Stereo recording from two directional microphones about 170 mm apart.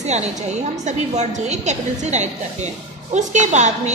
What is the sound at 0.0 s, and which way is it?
A woman's voice, 40° right (ahead or behind).